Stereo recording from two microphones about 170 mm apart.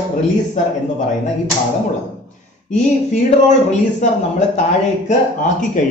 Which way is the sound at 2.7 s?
40° left (ahead or behind).